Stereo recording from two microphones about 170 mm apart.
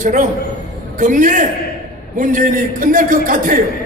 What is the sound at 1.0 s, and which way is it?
A man's voice, 50° right (ahead or behind).